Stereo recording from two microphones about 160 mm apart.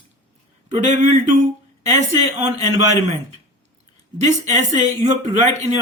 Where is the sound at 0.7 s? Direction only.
50° right (ahead or behind).